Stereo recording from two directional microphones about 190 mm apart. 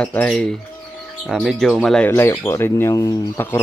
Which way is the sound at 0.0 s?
5° left (ahead or behind).